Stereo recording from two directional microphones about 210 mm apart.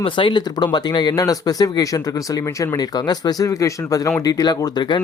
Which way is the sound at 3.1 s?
15° left (ahead or behind).